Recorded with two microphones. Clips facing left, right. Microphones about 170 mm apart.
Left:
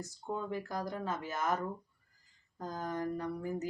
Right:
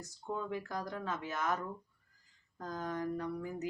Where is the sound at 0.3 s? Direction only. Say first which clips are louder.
Left 1 dB; 5° left (ahead or behind).